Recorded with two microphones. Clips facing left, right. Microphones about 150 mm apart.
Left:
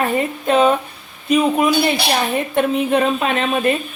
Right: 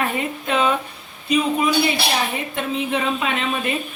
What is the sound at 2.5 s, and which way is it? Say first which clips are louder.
A woman's voice: left 8 dB; 50° left (ahead or behind).